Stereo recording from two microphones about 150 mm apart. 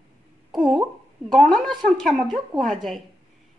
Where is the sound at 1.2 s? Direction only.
5° left (ahead or behind).